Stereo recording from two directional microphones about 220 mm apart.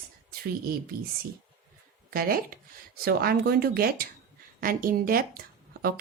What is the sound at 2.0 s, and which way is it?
A woman's voice, 40° right (ahead or behind).